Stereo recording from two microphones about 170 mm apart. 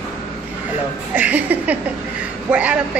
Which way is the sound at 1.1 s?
10° right (ahead or behind).